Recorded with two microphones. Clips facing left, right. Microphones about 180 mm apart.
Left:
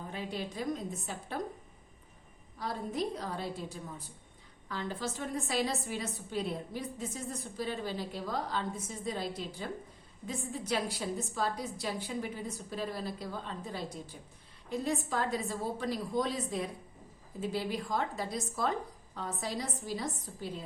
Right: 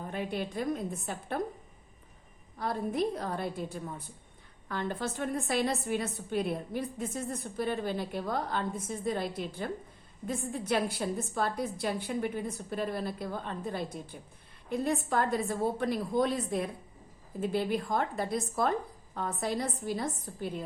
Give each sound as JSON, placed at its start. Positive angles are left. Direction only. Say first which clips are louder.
{"t": 0.1, "sound": "a woman's voice", "louder": "right 4 dB", "side_deg": -55}
{"t": 2.6, "sound": "a woman's voice", "louder": "right 4 dB", "side_deg": -55}